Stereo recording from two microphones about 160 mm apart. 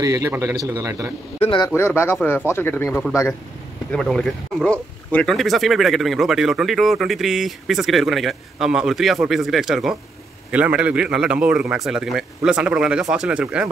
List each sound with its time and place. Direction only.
0.0 s a man's voice: 20° right (ahead or behind)
1.4 s a man's voice: 30° left (ahead or behind)
1.8 s speech: 15° left (ahead or behind)
2.9 s speech: 5° right (ahead or behind)